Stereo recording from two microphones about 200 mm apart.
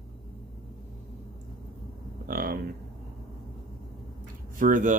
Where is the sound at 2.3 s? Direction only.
45° right (ahead or behind).